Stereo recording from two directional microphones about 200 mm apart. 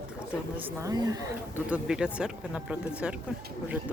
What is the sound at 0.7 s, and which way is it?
Speech, 20° right (ahead or behind).